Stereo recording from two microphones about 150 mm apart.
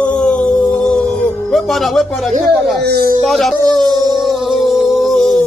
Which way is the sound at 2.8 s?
90° right.